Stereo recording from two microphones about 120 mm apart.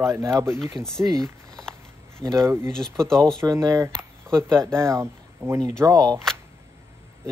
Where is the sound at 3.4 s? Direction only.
30° right (ahead or behind).